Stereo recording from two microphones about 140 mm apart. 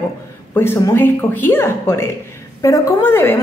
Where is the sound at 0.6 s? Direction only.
15° left (ahead or behind).